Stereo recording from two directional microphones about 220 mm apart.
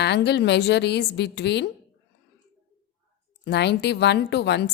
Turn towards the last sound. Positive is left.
turn(degrees=50)  # may be behind; listen again after turning